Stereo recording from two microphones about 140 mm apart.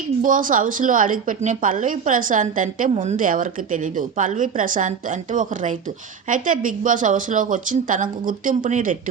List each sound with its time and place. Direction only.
0.2 s a woman's voice: 70° right (ahead or behind)
2.9 s a woman's voice: 60° right (ahead or behind)